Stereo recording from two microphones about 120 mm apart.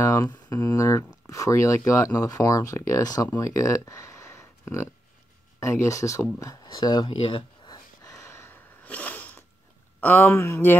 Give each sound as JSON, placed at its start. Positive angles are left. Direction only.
{"t": 0.0, "sound": "speech", "side_deg": 25}
{"t": 7.2, "sound": "a sound", "side_deg": 45}
{"t": 9.9, "sound": "speech", "side_deg": 15}